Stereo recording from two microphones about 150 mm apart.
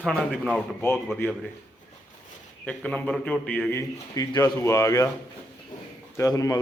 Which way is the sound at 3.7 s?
20° left (ahead or behind).